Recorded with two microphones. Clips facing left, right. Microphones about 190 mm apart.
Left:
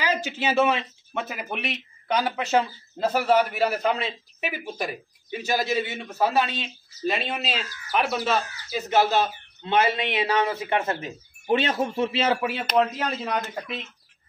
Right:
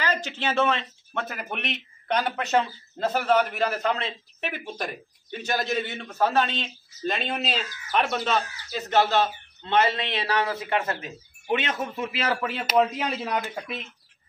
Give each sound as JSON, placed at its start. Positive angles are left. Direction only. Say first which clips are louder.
{"t": 0.0, "sound": "a man's voice", "louder": "left 2 dB", "side_deg": 10}
{"t": 12.4, "sound": "speech", "louder": "left 2 dB", "side_deg": 5}
{"t": 12.6, "sound": "speech", "louder": "right 1 dB", "side_deg": -5}